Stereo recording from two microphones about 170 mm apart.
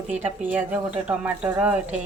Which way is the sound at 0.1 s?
10° right (ahead or behind).